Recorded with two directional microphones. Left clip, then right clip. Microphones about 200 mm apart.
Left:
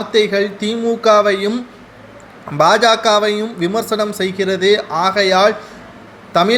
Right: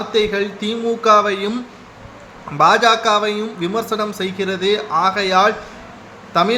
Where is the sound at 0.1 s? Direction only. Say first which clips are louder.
Left 4 dB; 15° left (ahead or behind).